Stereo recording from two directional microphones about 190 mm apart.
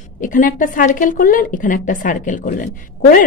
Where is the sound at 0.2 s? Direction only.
45° left (ahead or behind).